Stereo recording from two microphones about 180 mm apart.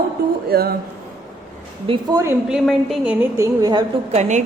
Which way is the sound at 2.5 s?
5° right (ahead or behind).